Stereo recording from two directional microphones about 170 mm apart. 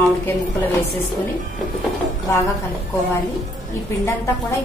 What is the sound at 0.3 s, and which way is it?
A woman's voice, 10° left (ahead or behind).